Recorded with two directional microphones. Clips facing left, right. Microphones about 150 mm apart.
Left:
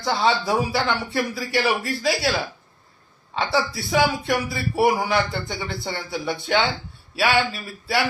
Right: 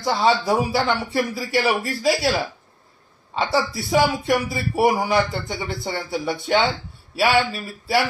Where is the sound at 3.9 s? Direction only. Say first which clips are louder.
Right 2 dB; centre (ahead or behind).